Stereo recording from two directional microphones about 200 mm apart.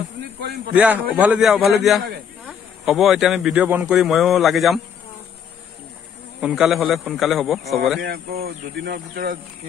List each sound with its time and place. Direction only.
0.7 s a man's voice: 5° right (ahead or behind)
6.4 s a man's voice: centre (ahead or behind)
8.0 s speech: 50° right (ahead or behind)